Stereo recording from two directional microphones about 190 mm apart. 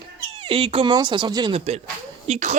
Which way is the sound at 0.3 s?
30° right (ahead or behind).